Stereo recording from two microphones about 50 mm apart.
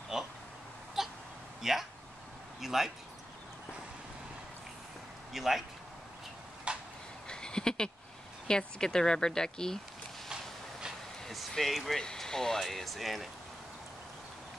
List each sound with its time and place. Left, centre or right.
0.1 s speech: centre
1.0 s a sound: centre
1.6 s speech: centre
5.3 s speech: centre
6.7 s a sound: right
7.2 s a sound: centre
8.5 s speech: centre
11.2 s speech: centre
12.0 s speech: centre